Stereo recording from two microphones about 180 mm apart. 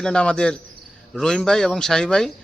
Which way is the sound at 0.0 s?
5° left (ahead or behind).